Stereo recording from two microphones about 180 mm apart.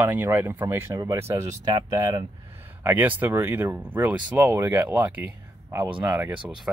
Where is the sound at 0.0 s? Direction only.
10° right (ahead or behind).